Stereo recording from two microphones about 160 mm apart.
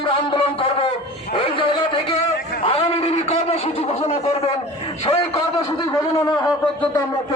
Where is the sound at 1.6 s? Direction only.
30° left (ahead or behind).